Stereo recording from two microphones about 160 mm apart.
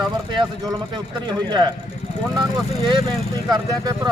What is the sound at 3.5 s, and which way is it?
Speech, 25° right (ahead or behind).